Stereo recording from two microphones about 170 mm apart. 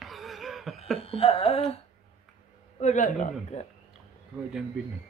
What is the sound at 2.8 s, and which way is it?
Speech, 45° left (ahead or behind).